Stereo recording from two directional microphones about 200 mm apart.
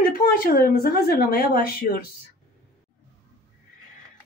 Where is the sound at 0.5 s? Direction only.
45° left (ahead or behind).